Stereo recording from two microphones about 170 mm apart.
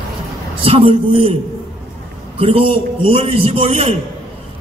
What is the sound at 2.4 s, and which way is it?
A man's voice, 35° right (ahead or behind).